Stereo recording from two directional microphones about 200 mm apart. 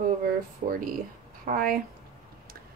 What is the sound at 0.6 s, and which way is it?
Speech, 30° right (ahead or behind).